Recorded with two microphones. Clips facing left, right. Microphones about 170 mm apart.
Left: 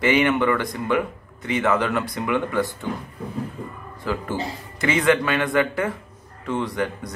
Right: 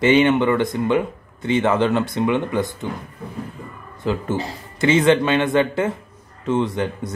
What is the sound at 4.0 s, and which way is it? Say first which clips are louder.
Speech: right 4 dB; 25° right (ahead or behind).